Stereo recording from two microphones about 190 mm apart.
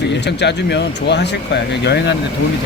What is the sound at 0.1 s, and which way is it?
Speech, 65° left (ahead or behind).